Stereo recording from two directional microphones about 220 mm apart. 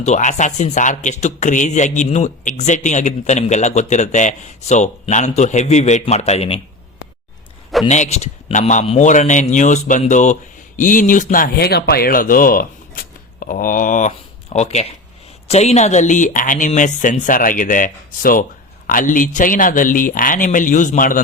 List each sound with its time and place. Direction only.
0.0 s a man's voice: 35° left (ahead or behind)
7.9 s a man's voice: 30° left (ahead or behind)